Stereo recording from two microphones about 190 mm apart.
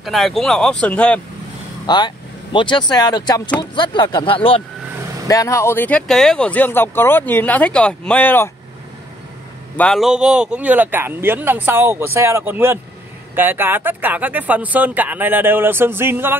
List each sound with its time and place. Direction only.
0.0 s speech: centre (ahead or behind)
1.9 s speech: 25° left (ahead or behind)
5.3 s speech: 15° left (ahead or behind)
9.8 s speech: centre (ahead or behind)